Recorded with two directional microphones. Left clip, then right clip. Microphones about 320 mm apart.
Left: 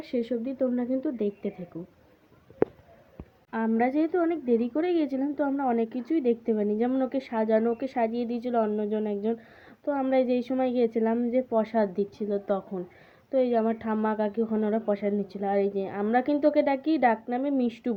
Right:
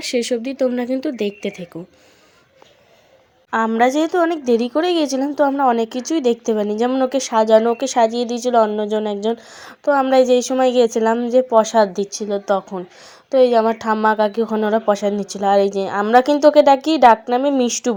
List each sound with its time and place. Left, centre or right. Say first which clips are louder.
0.0 s speech: right 10 dB; right
3.5 s a woman's voice: right 11 dB; centre